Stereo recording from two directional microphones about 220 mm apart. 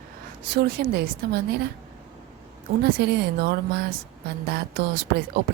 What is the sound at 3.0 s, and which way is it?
Speech, 50° right (ahead or behind).